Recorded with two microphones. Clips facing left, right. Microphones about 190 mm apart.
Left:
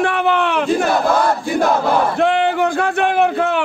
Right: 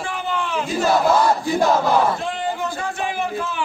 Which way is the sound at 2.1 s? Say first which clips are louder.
Left 10 dB; 65° left (ahead or behind).